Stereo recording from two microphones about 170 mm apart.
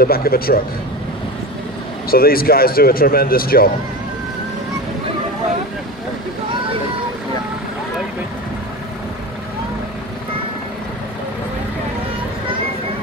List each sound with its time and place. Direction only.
0.0 s a man's voice: 60° left (ahead or behind)
2.0 s a man's voice: 60° left (ahead or behind)